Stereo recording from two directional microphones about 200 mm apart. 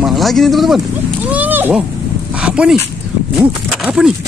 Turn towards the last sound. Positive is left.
turn(degrees=-5)  # may be behind; listen again after turning